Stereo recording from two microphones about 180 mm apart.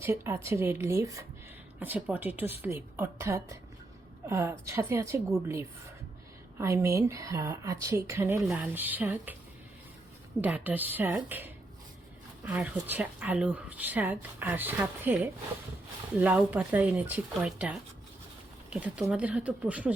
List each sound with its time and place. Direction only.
0.0 s speech: 10° right (ahead or behind)
6.6 s speech: 15° right (ahead or behind)
8.4 s speech: 5° right (ahead or behind)
10.4 s speech: 10° right (ahead or behind)